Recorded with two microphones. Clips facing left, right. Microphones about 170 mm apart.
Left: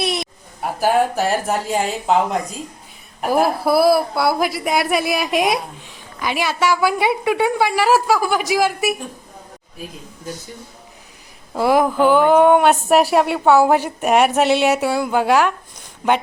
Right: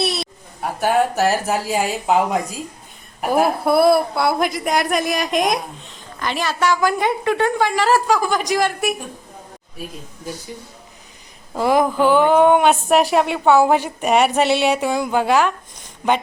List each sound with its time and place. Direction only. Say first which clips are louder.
0.0 s a sound: even; 15° left (ahead or behind)
0.6 s a woman's voice: left 1 dB; centre (ahead or behind)
11.5 s a woman's voice: left 1 dB; 10° left (ahead or behind)